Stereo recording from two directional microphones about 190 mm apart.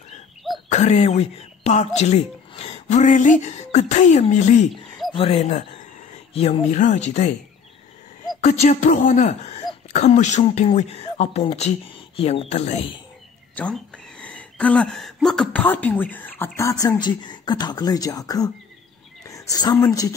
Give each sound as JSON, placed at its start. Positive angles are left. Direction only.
{"t": 0.7, "sound": "speech", "side_deg": 35}
{"t": 8.4, "sound": "speech", "side_deg": 40}
{"t": 13.6, "sound": "speech", "side_deg": 5}
{"t": 17.0, "sound": "a woman's voice", "side_deg": 25}